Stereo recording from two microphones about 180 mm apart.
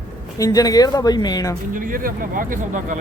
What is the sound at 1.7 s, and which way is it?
Speech, 50° right (ahead or behind).